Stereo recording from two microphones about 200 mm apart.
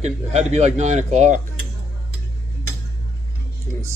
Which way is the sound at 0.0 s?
35° right (ahead or behind).